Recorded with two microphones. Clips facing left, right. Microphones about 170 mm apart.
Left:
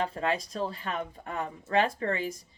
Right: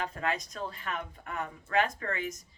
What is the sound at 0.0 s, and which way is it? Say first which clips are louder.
A woman's voice: left 4 dB; 30° left (ahead or behind).